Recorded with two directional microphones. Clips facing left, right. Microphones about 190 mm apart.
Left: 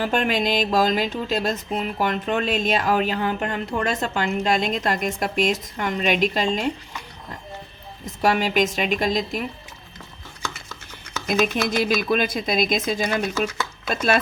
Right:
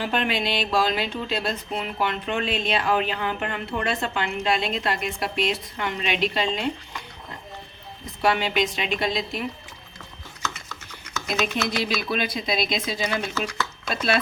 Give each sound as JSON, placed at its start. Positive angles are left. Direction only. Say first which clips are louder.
{"t": 0.0, "sound": "speech", "louder": "left 3 dB", "side_deg": 45}
{"t": 8.2, "sound": "speech", "louder": "left 3 dB", "side_deg": 45}
{"t": 11.3, "sound": "speech", "louder": "left 4 dB", "side_deg": 50}